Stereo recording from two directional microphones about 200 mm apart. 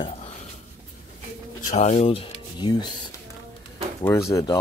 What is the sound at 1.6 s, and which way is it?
Speech, 35° left (ahead or behind).